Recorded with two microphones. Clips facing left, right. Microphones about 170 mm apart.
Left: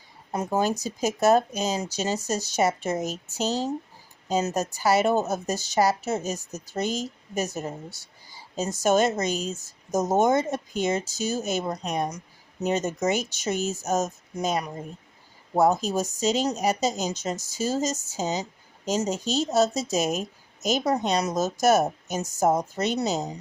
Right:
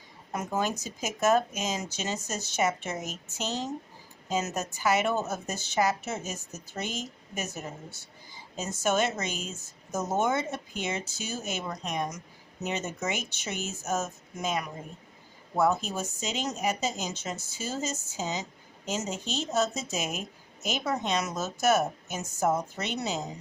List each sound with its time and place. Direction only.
0.3 s a woman's voice: 35° left (ahead or behind)